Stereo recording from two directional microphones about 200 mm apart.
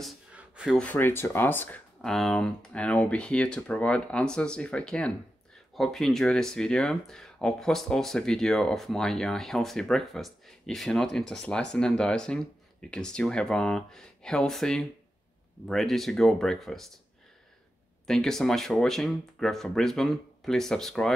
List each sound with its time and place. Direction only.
0.0 s speech: 5° right (ahead or behind)
18.0 s speech: centre (ahead or behind)